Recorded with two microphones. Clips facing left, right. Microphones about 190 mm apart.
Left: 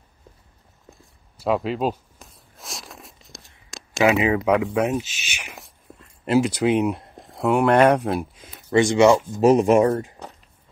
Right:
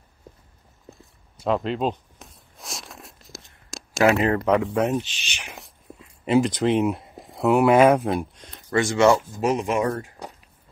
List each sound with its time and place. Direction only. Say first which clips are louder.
0.8 s a sound: right 3 dB; centre (ahead or behind)
8.7 s speech: left 3 dB; 20° left (ahead or behind)
9.4 s speech: left 8 dB; 40° left (ahead or behind)
9.8 s speech: left 5 dB; 25° left (ahead or behind)